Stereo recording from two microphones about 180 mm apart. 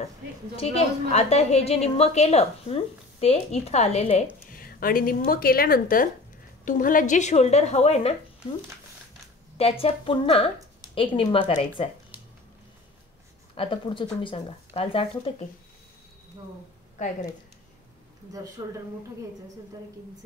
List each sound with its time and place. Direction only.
0.6 s a woman's voice: 35° left (ahead or behind)
4.5 s a woman's voice: 55° left (ahead or behind); by 8.5 s 35° left (ahead or behind)
9.6 s a woman's voice: 35° left (ahead or behind)
12.1 s a sound: 10° right (ahead or behind)
13.6 s a woman's voice: 30° left (ahead or behind)
18.6 s a woman's voice: 20° right (ahead or behind)